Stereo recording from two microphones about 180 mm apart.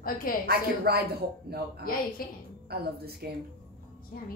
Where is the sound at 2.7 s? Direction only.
60° right (ahead or behind).